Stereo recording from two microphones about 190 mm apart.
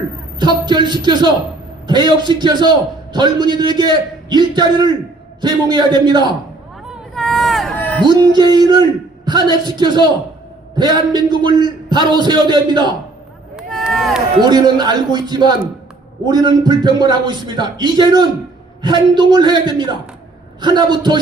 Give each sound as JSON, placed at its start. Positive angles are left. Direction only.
{"t": 0.3, "sound": "a man's voice", "side_deg": -20}
{"t": 6.8, "sound": "a sound", "side_deg": 0}
{"t": 8.0, "sound": "a man's voice", "side_deg": -20}
{"t": 13.6, "sound": "run", "side_deg": 0}
{"t": 14.4, "sound": "a man's voice", "side_deg": -20}